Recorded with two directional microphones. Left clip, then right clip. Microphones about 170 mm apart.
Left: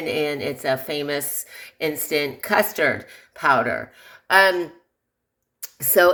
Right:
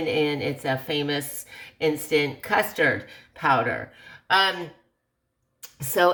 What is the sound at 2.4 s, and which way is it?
Speech, 40° left (ahead or behind).